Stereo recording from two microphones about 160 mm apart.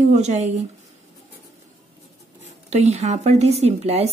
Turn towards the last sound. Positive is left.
turn(degrees=-40)  # may be behind; listen again after turning